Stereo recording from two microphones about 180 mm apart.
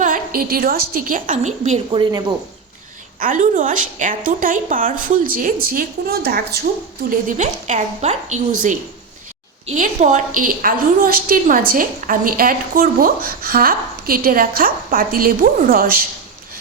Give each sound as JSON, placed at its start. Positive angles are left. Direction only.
{"t": 0.0, "sound": "a woman's voice", "side_deg": -50}
{"t": 3.2, "sound": "a woman's voice", "side_deg": -50}
{"t": 7.3, "sound": "a woman's voice", "side_deg": -40}